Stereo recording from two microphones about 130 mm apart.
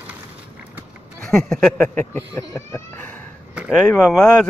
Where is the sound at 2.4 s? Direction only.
20° left (ahead or behind).